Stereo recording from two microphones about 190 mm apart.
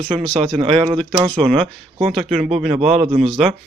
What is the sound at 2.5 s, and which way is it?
Speech, 35° right (ahead or behind).